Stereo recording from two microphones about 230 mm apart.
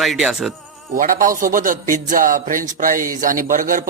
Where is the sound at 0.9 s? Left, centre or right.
Right.